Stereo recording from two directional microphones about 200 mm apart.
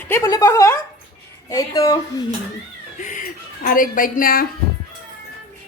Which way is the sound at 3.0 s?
40° left (ahead or behind).